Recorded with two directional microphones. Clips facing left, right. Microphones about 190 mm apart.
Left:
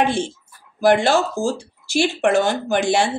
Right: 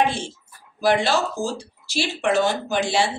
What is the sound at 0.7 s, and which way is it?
Speech, 50° left (ahead or behind).